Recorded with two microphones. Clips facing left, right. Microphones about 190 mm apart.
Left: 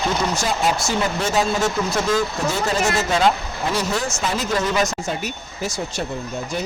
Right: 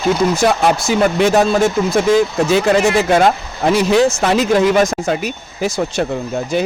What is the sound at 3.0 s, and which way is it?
Speech, 55° right (ahead or behind).